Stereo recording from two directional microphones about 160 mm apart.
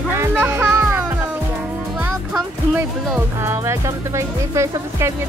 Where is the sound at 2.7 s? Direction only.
15° right (ahead or behind).